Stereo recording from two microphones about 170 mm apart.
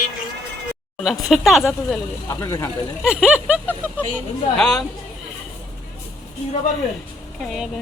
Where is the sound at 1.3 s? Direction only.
Centre (ahead or behind).